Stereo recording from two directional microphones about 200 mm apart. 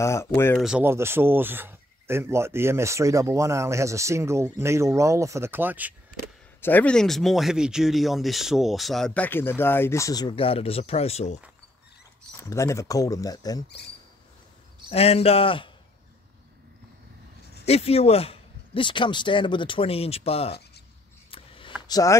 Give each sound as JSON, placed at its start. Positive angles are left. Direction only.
{"t": 0.0, "sound": "speech", "side_deg": 15}
{"t": 0.6, "sound": "speech", "side_deg": -5}
{"t": 6.6, "sound": "speech", "side_deg": 10}
{"t": 12.4, "sound": "speech", "side_deg": 15}
{"t": 14.9, "sound": "speech", "side_deg": 30}
{"t": 17.6, "sound": "speech", "side_deg": 30}
{"t": 21.3, "sound": "a sound", "side_deg": 25}
{"t": 21.8, "sound": "speech", "side_deg": 15}